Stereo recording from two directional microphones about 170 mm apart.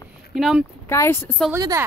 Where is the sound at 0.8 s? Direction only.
15° left (ahead or behind).